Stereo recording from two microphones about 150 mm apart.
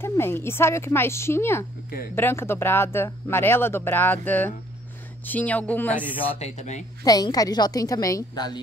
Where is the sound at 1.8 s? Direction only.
75° left (ahead or behind).